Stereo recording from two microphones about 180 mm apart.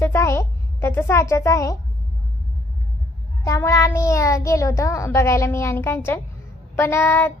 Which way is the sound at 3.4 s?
15° left (ahead or behind).